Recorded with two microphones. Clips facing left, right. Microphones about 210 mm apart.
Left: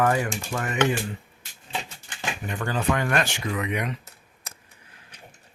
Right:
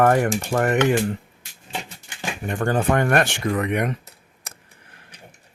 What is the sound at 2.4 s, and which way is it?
Speech, 50° right (ahead or behind).